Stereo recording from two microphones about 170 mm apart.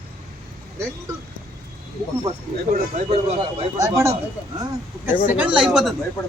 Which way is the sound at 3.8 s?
15° right (ahead or behind).